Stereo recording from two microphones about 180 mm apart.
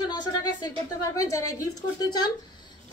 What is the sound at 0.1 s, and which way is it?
A woman's voice, 20° left (ahead or behind).